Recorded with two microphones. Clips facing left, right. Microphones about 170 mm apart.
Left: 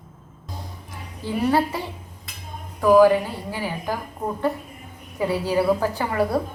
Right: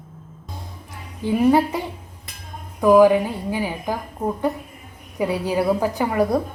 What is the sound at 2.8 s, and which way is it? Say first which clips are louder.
A woman's voice: right 1 dB; 15° right (ahead or behind).